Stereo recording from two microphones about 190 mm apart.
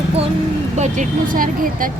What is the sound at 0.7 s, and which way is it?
Speech, 40° right (ahead or behind).